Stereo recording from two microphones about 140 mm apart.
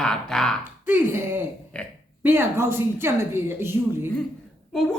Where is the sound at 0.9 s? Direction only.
15° right (ahead or behind).